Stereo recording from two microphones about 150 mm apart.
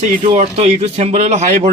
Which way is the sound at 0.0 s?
50° right (ahead or behind).